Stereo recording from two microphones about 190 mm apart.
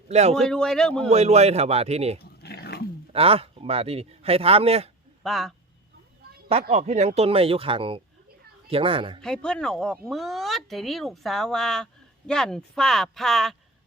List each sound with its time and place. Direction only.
0.1 s speech: 35° right (ahead or behind)
0.3 s speech: 5° left (ahead or behind)
1.0 s speech: 35° right (ahead or behind)
2.1 s dog: 60° left (ahead or behind)
3.1 s speech: 30° right (ahead or behind)
5.2 s speech: centre (ahead or behind)
6.5 s speech: 35° right (ahead or behind)
9.2 s speech: 5° left (ahead or behind)